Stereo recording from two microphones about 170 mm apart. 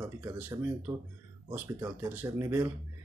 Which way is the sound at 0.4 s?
10° right (ahead or behind).